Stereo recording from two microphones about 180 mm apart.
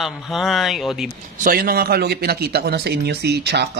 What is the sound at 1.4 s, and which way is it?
Speech, 55° right (ahead or behind).